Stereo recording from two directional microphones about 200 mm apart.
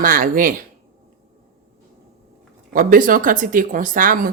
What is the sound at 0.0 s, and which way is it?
Speech, 45° right (ahead or behind).